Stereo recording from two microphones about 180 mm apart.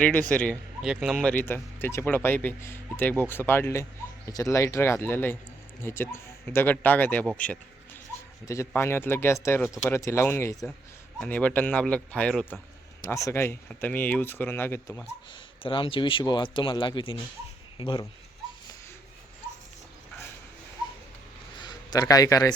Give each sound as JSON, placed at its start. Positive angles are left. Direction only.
{"t": 0.0, "sound": "a man's voice", "side_deg": 5}
{"t": 13.0, "sound": "a man's voice", "side_deg": 15}
{"t": 15.6, "sound": "speech", "side_deg": 30}
{"t": 21.6, "sound": "speech", "side_deg": 20}